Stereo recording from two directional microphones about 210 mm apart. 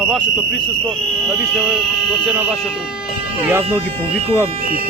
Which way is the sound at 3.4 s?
10° right (ahead or behind).